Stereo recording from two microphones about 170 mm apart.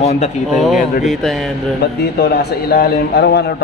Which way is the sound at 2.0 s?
70° left (ahead or behind).